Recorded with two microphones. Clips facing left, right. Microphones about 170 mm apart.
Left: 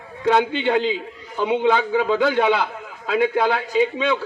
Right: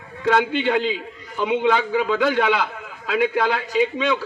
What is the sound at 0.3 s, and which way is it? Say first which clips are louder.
A man's voice: left 1 dB; 20° left (ahead or behind).